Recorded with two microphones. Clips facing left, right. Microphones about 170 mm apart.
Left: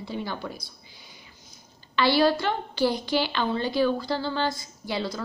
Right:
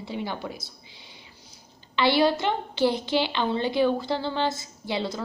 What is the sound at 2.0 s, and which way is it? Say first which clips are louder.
A woman's voice: even; 20° right (ahead or behind).